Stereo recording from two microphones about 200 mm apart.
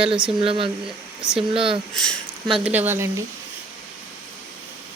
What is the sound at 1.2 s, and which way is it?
Speech, 5° right (ahead or behind).